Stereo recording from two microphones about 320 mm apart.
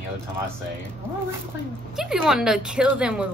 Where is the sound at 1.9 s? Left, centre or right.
Centre.